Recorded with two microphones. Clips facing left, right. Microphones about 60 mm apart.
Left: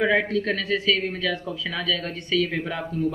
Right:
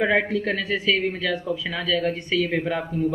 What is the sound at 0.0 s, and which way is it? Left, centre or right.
A man's voice, centre.